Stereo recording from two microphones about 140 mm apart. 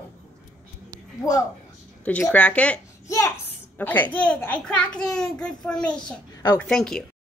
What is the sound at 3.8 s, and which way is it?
A child's voice, 10° left (ahead or behind).